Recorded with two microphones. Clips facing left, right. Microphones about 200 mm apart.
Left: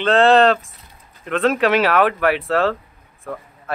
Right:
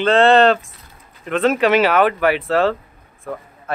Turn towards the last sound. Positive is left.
turn(degrees=0)  # may be behind; listen again after turning